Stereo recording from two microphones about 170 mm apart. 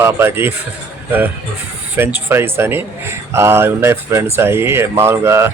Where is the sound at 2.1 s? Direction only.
15° right (ahead or behind).